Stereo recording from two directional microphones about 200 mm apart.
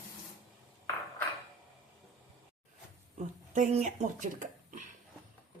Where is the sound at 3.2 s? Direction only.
35° right (ahead or behind).